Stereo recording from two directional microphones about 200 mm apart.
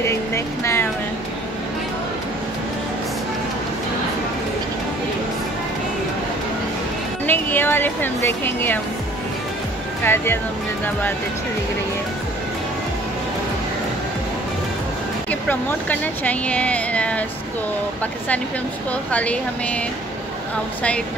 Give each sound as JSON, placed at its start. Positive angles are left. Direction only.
{"t": 0.0, "sound": "a sound", "side_deg": 15}
{"t": 7.2, "sound": "speech", "side_deg": 10}
{"t": 10.0, "sound": "speech", "side_deg": 10}
{"t": 15.4, "sound": "speech", "side_deg": 10}